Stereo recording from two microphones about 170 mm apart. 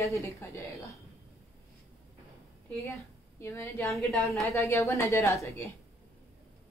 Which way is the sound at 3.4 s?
15° left (ahead or behind).